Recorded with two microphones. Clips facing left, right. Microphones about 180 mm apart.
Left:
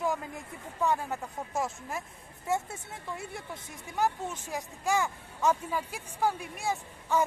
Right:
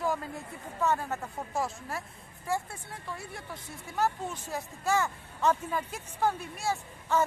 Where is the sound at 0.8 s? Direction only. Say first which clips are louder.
Even; 15° left (ahead or behind).